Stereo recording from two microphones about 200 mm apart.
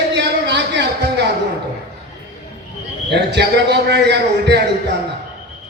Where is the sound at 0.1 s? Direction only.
60° right (ahead or behind).